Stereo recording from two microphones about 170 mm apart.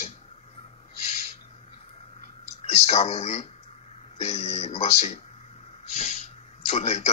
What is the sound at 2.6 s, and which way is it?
Speech, 40° left (ahead or behind).